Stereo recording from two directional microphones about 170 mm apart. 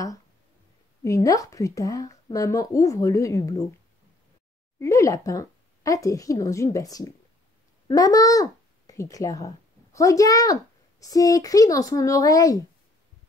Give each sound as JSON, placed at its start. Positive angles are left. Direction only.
{"t": 1.0, "sound": "a child's voice", "side_deg": 20}
{"t": 4.7, "sound": "a child's voice", "side_deg": 20}